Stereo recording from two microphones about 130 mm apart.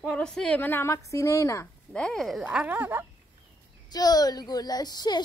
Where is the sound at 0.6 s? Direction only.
15° left (ahead or behind).